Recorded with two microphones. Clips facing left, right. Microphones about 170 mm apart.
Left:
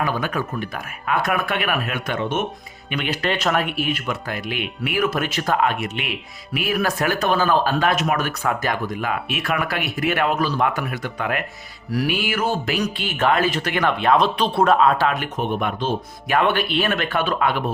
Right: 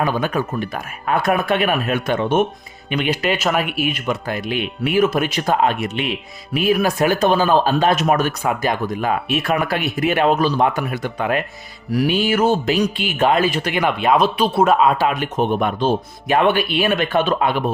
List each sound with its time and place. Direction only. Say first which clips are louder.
0.0 s speech: right 4 dB; 25° right (ahead or behind)
2.9 s speech: right 4 dB; 15° right (ahead or behind)
4.0 s a man's voice: right 4 dB; 25° right (ahead or behind)
15.2 s a man's voice: right 5 dB; 35° right (ahead or behind)
16.5 s speech: right 3 dB; 10° right (ahead or behind)